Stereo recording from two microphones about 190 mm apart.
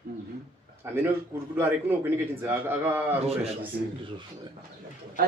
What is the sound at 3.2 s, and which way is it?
Speech, 30° right (ahead or behind).